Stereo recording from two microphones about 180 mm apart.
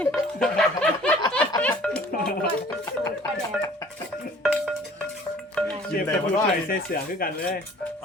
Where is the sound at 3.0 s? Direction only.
15° left (ahead or behind).